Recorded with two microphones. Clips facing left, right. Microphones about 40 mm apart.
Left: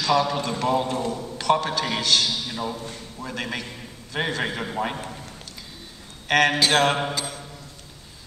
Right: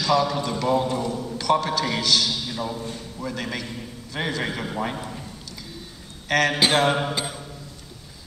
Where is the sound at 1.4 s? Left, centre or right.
Left.